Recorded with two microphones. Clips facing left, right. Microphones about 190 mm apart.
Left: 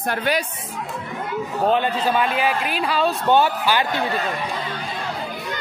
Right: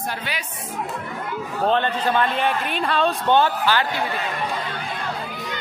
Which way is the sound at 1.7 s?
10° left (ahead or behind).